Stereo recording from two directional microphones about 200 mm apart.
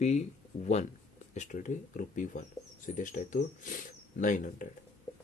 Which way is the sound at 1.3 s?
40° left (ahead or behind).